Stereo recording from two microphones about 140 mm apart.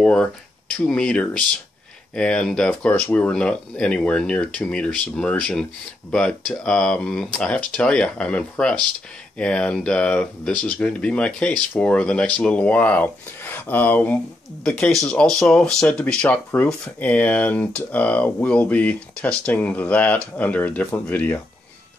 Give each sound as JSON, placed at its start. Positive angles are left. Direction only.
{"t": 0.0, "sound": "speech", "side_deg": 5}